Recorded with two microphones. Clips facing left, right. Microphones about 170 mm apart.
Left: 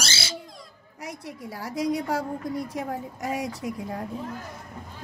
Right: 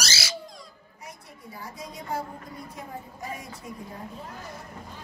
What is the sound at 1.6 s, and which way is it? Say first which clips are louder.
A woman's voice: left 13 dB; 85° left.